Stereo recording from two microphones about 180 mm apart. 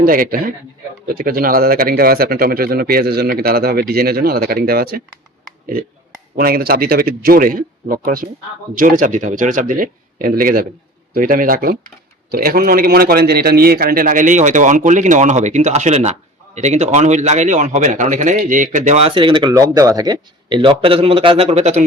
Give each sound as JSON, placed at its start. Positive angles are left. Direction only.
{"t": 0.0, "sound": "a man's voice", "side_deg": -50}
{"t": 6.3, "sound": "a man's voice", "side_deg": -55}